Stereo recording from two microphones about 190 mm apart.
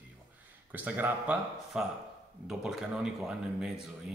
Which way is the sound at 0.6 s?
10° right (ahead or behind).